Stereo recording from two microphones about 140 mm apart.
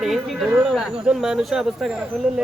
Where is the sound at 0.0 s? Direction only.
Centre (ahead or behind).